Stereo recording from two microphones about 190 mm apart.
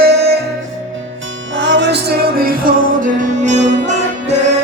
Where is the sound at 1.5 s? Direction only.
70° right (ahead or behind); by 4.3 s 40° right (ahead or behind).